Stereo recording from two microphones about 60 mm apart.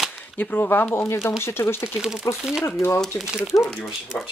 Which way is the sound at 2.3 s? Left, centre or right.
Left.